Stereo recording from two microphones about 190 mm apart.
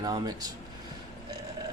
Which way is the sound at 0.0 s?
20° right (ahead or behind).